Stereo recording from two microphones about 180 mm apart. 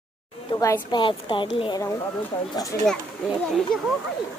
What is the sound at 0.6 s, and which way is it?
A woman's voice, 20° left (ahead or behind).